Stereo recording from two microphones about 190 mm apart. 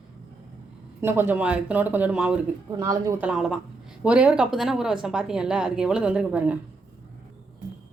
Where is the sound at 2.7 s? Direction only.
15° right (ahead or behind).